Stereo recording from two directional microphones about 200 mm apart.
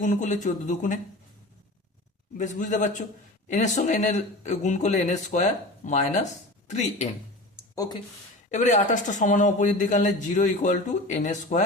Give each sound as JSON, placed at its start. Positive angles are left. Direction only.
{"t": 0.0, "sound": "a man's voice", "side_deg": 40}
{"t": 2.4, "sound": "a man's voice", "side_deg": 40}
{"t": 8.4, "sound": "a man's voice", "side_deg": 35}